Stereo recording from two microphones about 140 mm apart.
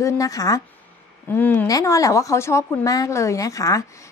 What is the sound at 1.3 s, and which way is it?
Speech, 15° left (ahead or behind).